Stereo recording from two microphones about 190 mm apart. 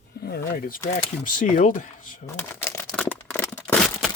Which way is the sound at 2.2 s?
10° left (ahead or behind).